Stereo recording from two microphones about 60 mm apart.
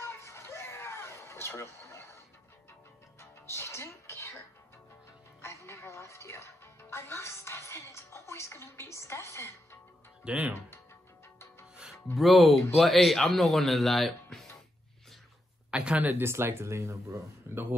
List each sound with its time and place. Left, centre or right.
0.0 s a sound: left
3.2 s music: left
5.4 s a woman's voice: left
10.2 s speech: centre
11.7 s music: centre
12.2 s speech: centre
15.7 s speech: centre
16.0 s speech: right